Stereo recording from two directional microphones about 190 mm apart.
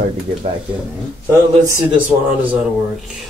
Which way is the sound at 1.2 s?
10° right (ahead or behind).